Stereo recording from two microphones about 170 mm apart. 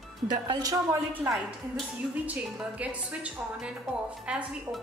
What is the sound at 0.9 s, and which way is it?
A woman's voice, 10° right (ahead or behind).